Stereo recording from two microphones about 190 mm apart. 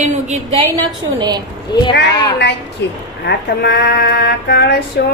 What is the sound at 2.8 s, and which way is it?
Speech, 65° left (ahead or behind).